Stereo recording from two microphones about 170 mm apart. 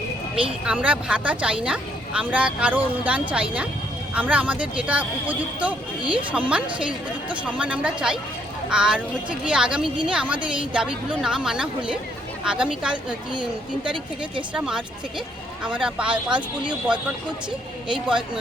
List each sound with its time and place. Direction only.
0.6 s a woman's voice: 5° right (ahead or behind)
13.8 s speech: 30° right (ahead or behind)
14.5 s a woman's voice: 5° right (ahead or behind)
16.3 s speech: 25° right (ahead or behind)